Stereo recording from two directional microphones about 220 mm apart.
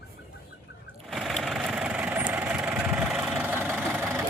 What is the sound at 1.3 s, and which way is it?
Vehicle, 5° right (ahead or behind).